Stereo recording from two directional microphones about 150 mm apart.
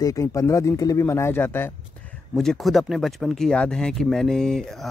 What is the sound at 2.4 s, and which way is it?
Speech, centre (ahead or behind).